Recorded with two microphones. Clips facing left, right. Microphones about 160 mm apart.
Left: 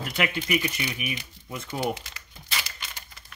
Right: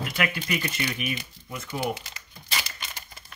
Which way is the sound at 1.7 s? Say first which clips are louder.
Left 1 dB; 35° left (ahead or behind).